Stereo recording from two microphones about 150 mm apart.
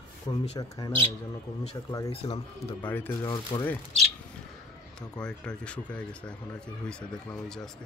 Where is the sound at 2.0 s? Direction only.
45° left (ahead or behind).